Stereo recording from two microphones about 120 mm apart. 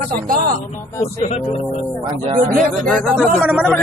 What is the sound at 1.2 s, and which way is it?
Speech, 70° left (ahead or behind).